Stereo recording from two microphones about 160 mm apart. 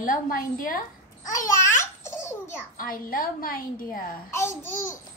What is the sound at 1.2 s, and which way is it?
Babbling, 20° left (ahead or behind).